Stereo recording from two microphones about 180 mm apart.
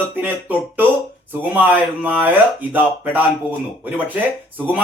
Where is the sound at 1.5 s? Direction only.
10° right (ahead or behind).